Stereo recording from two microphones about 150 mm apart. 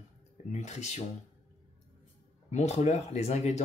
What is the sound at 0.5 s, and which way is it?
Speech, 50° left (ahead or behind).